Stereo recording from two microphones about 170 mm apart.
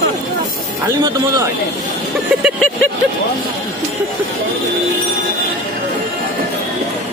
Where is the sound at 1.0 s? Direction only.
20° right (ahead or behind).